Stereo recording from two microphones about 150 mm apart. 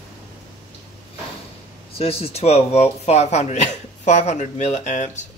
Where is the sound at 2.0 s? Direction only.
40° left (ahead or behind).